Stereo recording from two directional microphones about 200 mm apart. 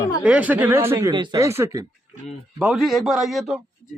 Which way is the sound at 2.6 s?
Centre (ahead or behind).